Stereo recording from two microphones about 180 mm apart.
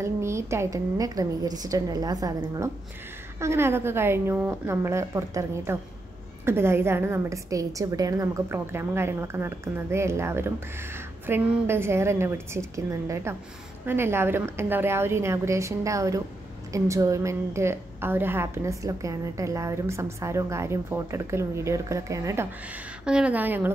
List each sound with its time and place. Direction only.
0.0 s a woman's voice: 15° right (ahead or behind)
23.0 s a woman's voice: 5° right (ahead or behind)